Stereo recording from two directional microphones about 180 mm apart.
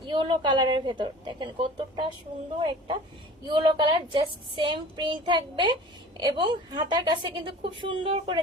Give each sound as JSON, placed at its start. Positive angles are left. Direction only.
{"t": 0.0, "sound": "a child's voice", "side_deg": -25}